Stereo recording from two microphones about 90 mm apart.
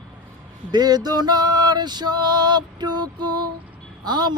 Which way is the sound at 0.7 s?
50° right (ahead or behind).